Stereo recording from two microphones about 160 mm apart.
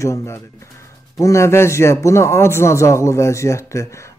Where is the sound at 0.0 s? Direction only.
20° left (ahead or behind).